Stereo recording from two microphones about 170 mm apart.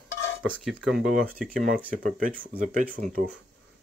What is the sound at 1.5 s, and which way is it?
Speech, 50° right (ahead or behind).